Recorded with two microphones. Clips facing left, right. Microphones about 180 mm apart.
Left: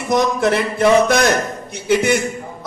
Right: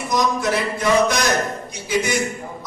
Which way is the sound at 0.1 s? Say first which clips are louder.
Left 5 dB; 60° left (ahead or behind).